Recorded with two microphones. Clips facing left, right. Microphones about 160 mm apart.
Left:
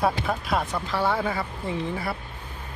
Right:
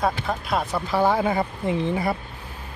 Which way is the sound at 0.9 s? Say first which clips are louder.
Right 5 dB; 20° right (ahead or behind).